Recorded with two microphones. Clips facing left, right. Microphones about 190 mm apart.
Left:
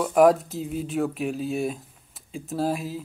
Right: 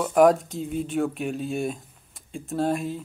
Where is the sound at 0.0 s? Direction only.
Centre (ahead or behind).